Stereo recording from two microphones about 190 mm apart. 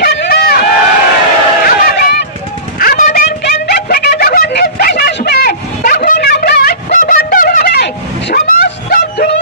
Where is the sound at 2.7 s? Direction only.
50° left (ahead or behind).